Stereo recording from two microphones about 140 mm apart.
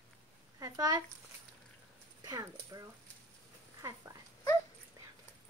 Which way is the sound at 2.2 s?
25° right (ahead or behind).